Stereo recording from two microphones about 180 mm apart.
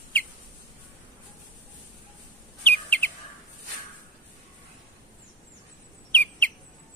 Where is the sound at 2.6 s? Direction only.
10° left (ahead or behind).